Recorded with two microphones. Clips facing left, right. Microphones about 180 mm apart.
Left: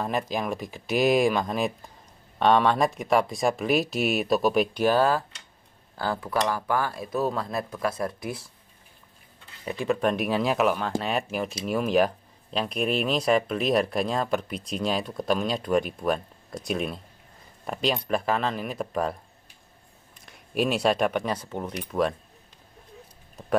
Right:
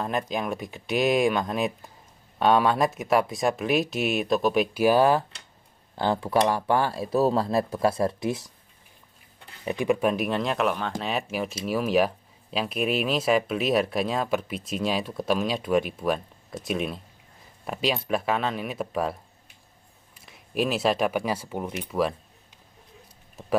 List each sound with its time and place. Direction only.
0.0 s speech: centre (ahead or behind)
4.8 s speech: 15° right (ahead or behind)
9.7 s speech: 15° right (ahead or behind)
20.2 s speech: centre (ahead or behind)